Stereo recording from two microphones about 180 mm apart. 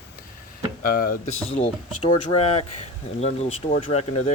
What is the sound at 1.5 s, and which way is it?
Speech, 35° left (ahead or behind).